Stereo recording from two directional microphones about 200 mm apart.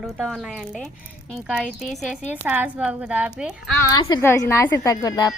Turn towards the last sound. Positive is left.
turn(degrees=20)  # may be behind; listen again after turning